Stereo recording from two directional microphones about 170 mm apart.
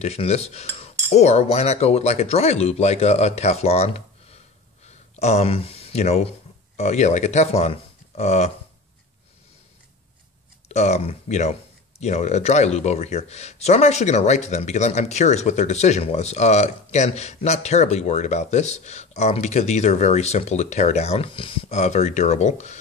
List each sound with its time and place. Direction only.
0.0 s speech: 40° left (ahead or behind)
10.7 s speech: 40° left (ahead or behind)